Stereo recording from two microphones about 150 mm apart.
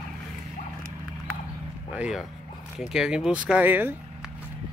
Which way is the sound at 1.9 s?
5° right (ahead or behind).